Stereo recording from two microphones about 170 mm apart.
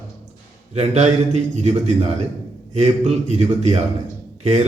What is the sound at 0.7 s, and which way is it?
A man's voice, 40° right (ahead or behind).